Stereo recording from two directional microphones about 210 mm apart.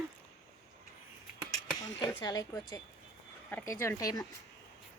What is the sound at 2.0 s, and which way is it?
Speech, 20° left (ahead or behind).